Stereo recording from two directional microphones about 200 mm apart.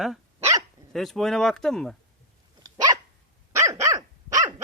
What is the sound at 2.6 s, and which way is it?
Dog, 20° right (ahead or behind).